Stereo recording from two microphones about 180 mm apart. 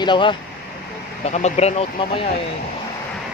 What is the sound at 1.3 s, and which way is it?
Speech, 40° left (ahead or behind).